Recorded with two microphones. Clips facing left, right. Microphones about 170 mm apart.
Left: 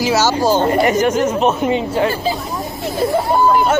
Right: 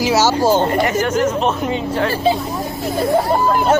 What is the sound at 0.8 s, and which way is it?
Speech, 15° left (ahead or behind).